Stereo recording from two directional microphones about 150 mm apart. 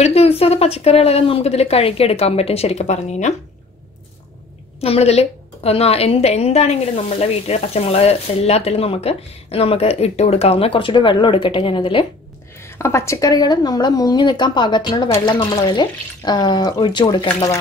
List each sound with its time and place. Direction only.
0.0 s a woman's voice: 40° left (ahead or behind)
4.7 s a woman's voice: 40° left (ahead or behind)
12.6 s speech: 15° left (ahead or behind)